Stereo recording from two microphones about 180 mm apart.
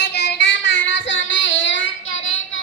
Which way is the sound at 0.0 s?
70° left (ahead or behind).